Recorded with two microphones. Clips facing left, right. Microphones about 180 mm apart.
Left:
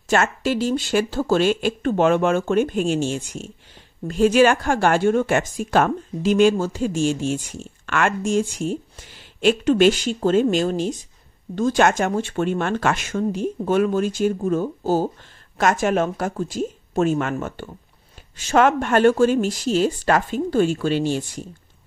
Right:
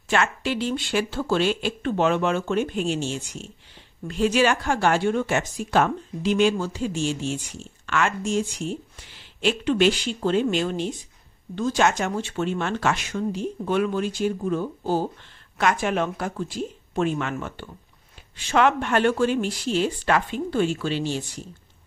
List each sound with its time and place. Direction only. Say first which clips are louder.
0.1 s speech: left 4 dB; 40° left (ahead or behind)
11.5 s speech: left 4 dB; 50° left (ahead or behind)